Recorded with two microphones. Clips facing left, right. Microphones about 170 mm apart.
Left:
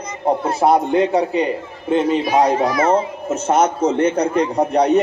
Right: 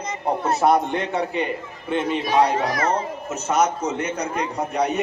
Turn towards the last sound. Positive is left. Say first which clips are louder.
# left 7 dB
turn(degrees=35)  # may be behind; listen again after turning